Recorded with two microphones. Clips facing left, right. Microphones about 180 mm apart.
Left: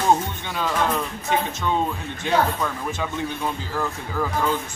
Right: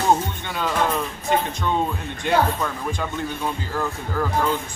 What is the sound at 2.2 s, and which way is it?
Speech, 5° right (ahead or behind).